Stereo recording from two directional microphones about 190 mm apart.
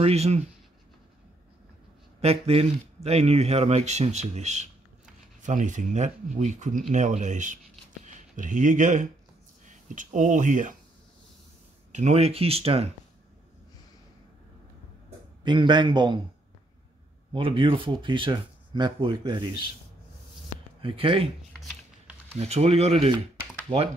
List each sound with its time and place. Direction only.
0.0 s speech: 35° right (ahead or behind)
2.2 s speech: 30° right (ahead or behind)
11.9 s speech: 35° right (ahead or behind)
15.4 s speech: 25° right (ahead or behind)
17.3 s speech: 25° right (ahead or behind)
20.8 s speech: 30° right (ahead or behind)
22.4 s speech: 35° right (ahead or behind)
23.7 s speech: 20° right (ahead or behind)